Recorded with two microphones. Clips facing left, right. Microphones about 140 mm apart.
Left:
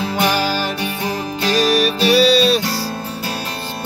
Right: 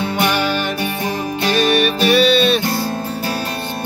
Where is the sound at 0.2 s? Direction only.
35° left (ahead or behind).